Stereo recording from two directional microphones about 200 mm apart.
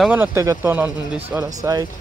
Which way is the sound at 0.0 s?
10° right (ahead or behind).